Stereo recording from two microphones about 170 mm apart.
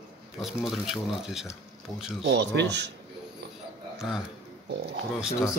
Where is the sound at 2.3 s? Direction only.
90° right.